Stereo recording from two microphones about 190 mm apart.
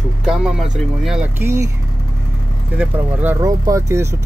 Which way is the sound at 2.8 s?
10° right (ahead or behind).